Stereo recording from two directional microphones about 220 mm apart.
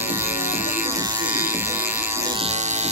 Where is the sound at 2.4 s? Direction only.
30° right (ahead or behind).